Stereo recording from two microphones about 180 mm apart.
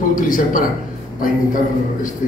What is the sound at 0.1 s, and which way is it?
Speech, 50° left (ahead or behind).